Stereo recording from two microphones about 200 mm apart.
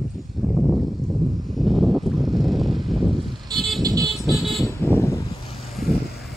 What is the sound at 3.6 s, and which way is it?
Vehicle, centre (ahead or behind).